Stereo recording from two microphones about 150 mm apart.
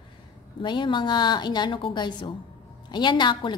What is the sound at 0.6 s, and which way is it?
A woman's voice, 30° left (ahead or behind).